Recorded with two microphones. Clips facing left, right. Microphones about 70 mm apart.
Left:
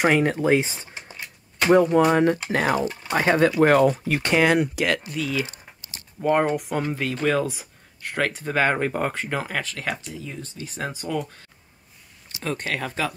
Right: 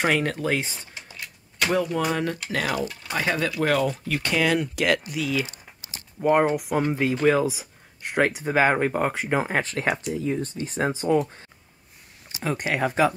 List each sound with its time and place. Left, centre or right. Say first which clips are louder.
0.0 s speech: left 4 dB; centre; by 4.6 s left
4.7 s speech: right 1 dB; centre
8.0 s speech: right 3 dB; centre
9.6 s speech: right 4 dB; right
12.4 s speech: right 3 dB; centre